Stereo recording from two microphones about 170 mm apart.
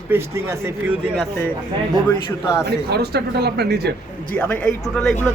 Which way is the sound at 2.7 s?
70° right (ahead or behind).